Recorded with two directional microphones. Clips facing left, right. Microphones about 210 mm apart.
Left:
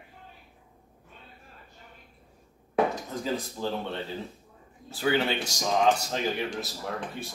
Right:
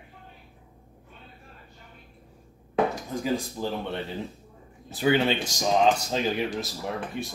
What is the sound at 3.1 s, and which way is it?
Speech, 10° right (ahead or behind).